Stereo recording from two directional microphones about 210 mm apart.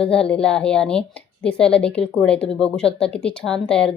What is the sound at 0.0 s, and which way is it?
A woman's voice, 5° left (ahead or behind).